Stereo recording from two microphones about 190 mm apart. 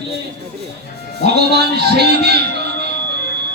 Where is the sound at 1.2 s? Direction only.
60° right (ahead or behind).